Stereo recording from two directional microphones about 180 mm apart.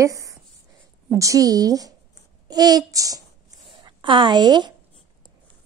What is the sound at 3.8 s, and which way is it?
Speech, 25° right (ahead or behind).